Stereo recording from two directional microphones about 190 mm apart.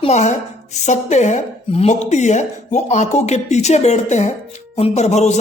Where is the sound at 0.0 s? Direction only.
35° left (ahead or behind).